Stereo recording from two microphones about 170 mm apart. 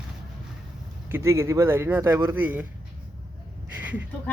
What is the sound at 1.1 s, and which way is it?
Speech, 15° right (ahead or behind).